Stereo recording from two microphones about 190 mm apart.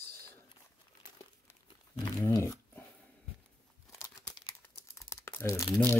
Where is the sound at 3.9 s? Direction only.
15° left (ahead or behind).